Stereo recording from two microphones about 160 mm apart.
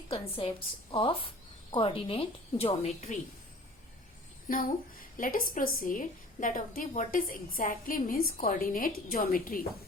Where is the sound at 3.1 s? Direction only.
50° left (ahead or behind).